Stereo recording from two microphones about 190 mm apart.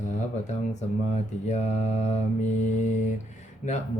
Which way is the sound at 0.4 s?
35° left (ahead or behind).